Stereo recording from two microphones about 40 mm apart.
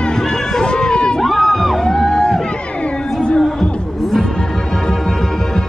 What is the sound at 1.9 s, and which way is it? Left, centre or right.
Music, centre.